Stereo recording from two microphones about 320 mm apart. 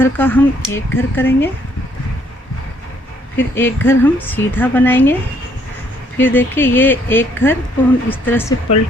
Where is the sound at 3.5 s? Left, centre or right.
Centre.